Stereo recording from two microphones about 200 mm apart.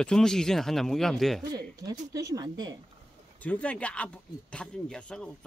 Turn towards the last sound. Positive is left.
turn(degrees=5)  # may be behind; listen again after turning